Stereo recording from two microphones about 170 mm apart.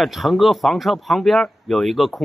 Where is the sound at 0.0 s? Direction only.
Centre (ahead or behind).